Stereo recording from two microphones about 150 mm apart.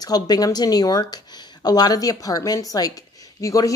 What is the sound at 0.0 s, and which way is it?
Speech, 25° left (ahead or behind).